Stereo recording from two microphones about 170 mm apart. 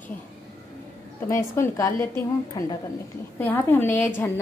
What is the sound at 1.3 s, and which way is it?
Speech, 15° left (ahead or behind).